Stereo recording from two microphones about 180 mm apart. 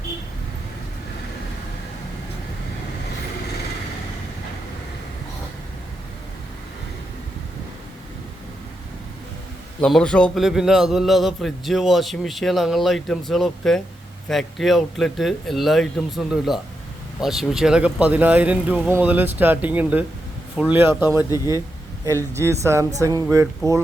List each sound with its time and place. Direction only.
9.8 s a man's voice: 5° left (ahead or behind)
21.2 s a man's voice: 20° left (ahead or behind)
22.0 s speech: 15° right (ahead or behind)